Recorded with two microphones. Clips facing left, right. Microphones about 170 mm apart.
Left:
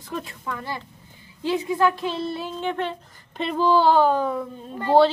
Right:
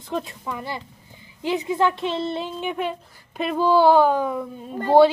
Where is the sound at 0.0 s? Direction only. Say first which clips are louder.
Right 3 dB; 20° right (ahead or behind).